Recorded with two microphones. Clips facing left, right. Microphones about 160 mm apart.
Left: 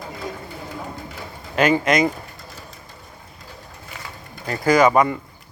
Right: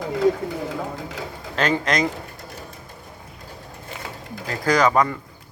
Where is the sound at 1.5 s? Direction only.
10° left (ahead or behind).